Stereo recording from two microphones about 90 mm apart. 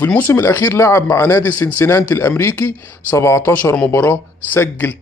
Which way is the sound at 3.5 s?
15° left (ahead or behind).